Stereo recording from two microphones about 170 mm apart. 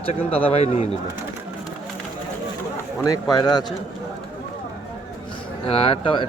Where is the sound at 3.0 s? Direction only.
25° left (ahead or behind).